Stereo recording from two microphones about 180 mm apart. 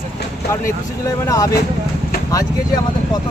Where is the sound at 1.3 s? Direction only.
20° left (ahead or behind).